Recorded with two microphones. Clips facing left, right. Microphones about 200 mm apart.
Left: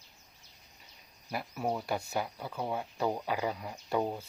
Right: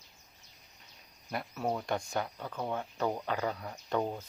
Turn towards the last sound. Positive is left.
turn(degrees=10)  # may be behind; listen again after turning